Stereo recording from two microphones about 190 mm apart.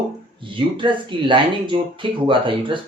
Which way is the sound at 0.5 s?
25° right (ahead or behind).